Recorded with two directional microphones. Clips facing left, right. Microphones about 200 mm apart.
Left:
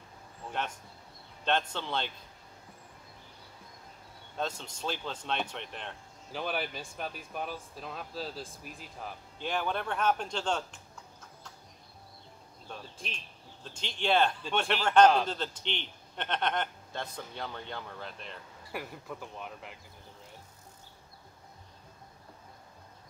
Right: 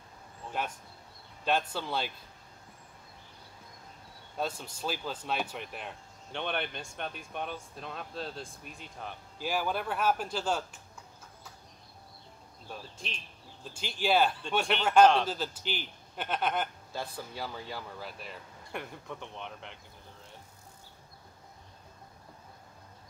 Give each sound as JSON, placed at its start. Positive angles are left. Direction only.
{"t": 0.6, "sound": "speech", "side_deg": -10}
{"t": 4.4, "sound": "speech", "side_deg": -10}
{"t": 12.6, "sound": "speech", "side_deg": -5}